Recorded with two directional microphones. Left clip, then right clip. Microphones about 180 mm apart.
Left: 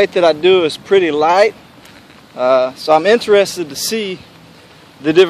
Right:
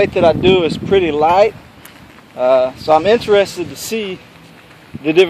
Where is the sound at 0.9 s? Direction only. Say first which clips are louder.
Left 2 dB; 50° left (ahead or behind).